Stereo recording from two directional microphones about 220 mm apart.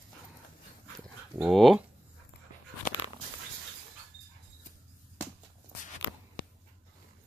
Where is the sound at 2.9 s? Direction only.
40° left (ahead or behind).